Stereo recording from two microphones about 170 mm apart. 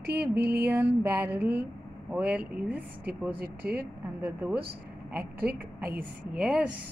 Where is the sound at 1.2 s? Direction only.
10° right (ahead or behind).